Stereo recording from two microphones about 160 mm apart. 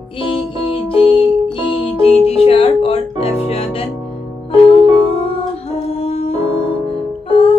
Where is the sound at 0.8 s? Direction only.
35° left (ahead or behind).